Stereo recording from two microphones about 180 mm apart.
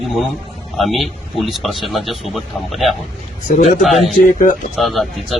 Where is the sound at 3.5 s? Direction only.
45° left (ahead or behind).